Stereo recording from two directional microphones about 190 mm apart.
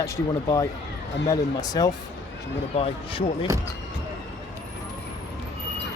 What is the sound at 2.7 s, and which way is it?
Speech, 30° left (ahead or behind).